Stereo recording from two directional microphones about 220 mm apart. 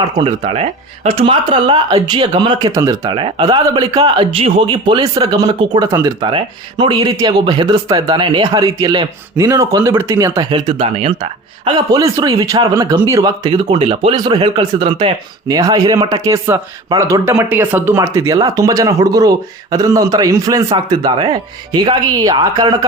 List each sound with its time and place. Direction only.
0.2 s speech: 25° right (ahead or behind)